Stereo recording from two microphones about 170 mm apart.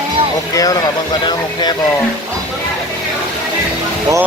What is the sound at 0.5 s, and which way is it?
Speech, 20° left (ahead or behind).